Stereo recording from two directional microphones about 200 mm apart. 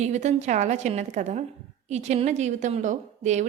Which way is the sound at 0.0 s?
35° right (ahead or behind).